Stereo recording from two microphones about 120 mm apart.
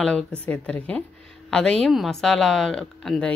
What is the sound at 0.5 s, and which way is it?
A woman's voice, 10° left (ahead or behind).